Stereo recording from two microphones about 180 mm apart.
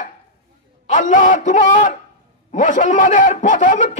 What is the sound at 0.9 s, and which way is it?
Speech, 45° left (ahead or behind).